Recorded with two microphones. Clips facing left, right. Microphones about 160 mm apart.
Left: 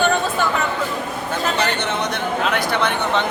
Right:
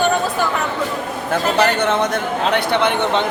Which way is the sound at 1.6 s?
55° right (ahead or behind).